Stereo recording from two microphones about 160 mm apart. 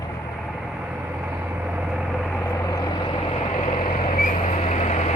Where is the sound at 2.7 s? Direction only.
20° left (ahead or behind).